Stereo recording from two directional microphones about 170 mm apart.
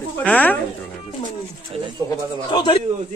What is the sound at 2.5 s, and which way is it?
Speech, 25° left (ahead or behind).